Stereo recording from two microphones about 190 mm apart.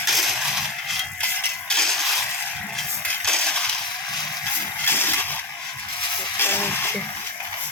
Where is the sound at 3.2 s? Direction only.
5° left (ahead or behind).